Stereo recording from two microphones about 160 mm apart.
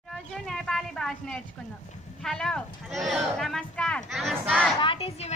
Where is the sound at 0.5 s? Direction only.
5° left (ahead or behind).